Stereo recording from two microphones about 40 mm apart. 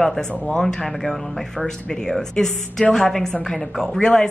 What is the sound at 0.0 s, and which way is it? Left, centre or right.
Speech, centre.